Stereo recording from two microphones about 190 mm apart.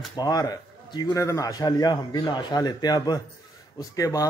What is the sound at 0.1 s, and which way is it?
A man's voice, 20° left (ahead or behind).